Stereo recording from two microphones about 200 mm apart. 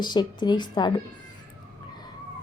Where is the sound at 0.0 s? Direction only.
20° left (ahead or behind).